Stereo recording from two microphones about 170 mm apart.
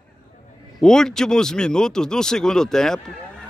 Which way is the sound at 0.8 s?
5° left (ahead or behind).